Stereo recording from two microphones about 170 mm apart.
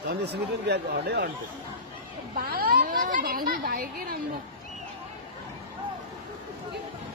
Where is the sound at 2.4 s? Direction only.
60° right (ahead or behind).